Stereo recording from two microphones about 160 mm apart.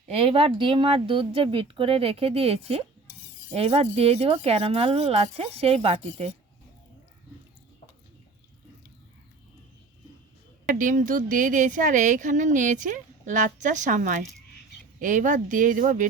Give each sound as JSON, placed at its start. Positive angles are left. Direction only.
{"t": 0.2, "sound": "speech", "side_deg": -35}
{"t": 10.7, "sound": "speech", "side_deg": -55}